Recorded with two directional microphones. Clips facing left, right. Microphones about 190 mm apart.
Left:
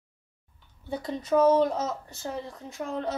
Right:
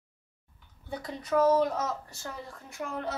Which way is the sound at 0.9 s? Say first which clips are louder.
Left 4 dB; 25° left (ahead or behind).